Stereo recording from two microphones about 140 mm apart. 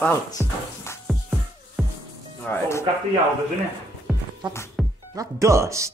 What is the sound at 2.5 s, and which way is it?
Speech, 20° left (ahead or behind).